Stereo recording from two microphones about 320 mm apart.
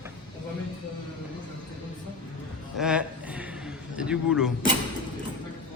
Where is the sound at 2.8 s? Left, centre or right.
Centre.